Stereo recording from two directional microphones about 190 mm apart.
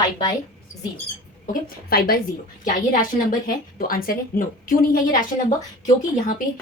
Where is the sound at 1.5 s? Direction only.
55° left (ahead or behind).